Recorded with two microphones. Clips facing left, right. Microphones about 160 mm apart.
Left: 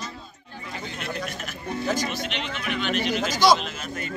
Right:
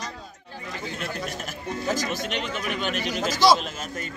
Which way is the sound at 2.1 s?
45° right (ahead or behind).